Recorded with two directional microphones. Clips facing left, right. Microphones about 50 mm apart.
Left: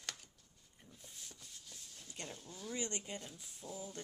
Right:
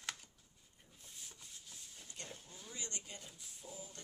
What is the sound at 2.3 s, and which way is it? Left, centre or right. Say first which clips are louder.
Speech: left 6 dB; centre.